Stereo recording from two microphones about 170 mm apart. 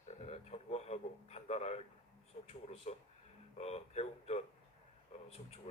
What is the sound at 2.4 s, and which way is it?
Speech, 35° left (ahead or behind).